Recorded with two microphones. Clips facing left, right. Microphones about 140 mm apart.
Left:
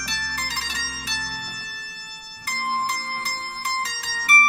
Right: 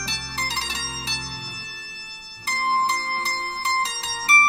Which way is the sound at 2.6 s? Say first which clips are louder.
Right 4 dB; 25° right (ahead or behind).